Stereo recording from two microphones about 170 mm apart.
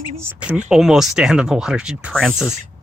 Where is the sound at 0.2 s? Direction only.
10° right (ahead or behind).